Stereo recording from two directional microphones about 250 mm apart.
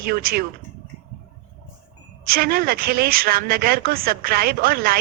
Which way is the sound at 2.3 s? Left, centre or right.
Right.